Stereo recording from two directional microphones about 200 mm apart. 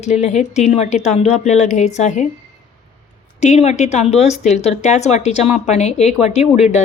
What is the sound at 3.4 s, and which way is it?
Speech, 35° left (ahead or behind).